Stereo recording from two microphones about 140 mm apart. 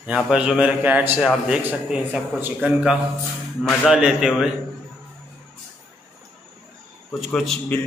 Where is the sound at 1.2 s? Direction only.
5° right (ahead or behind).